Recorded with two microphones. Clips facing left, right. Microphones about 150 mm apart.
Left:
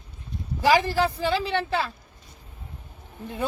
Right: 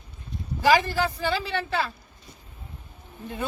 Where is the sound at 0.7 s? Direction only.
25° left (ahead or behind).